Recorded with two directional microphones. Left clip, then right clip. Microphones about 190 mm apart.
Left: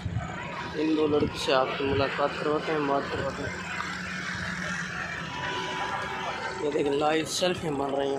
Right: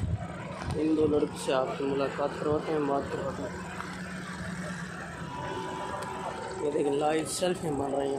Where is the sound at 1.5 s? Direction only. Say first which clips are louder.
Left 5 dB; 20° left (ahead or behind).